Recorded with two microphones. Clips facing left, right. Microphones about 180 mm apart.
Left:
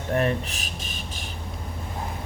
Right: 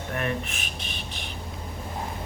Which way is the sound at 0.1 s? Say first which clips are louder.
Left 6 dB; 35° left (ahead or behind).